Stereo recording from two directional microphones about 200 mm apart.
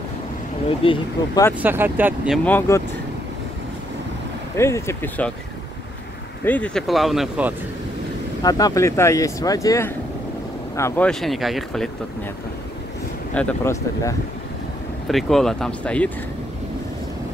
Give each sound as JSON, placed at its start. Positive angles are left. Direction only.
{"t": 0.7, "sound": "speech", "side_deg": 25}
{"t": 1.6, "sound": "speech", "side_deg": -10}
{"t": 2.4, "sound": "speech", "side_deg": 10}
{"t": 4.6, "sound": "speech", "side_deg": 15}
{"t": 6.4, "sound": "speech", "side_deg": 5}
{"t": 8.4, "sound": "speech", "side_deg": 20}
{"t": 13.3, "sound": "speech", "side_deg": 10}